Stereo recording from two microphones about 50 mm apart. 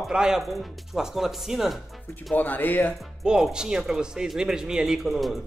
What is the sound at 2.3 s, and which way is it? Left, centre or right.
Speech, left.